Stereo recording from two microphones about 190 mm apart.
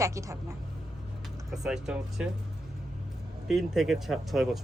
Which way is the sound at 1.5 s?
5° right (ahead or behind).